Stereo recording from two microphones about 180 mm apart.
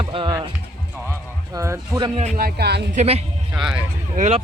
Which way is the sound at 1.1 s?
15° right (ahead or behind).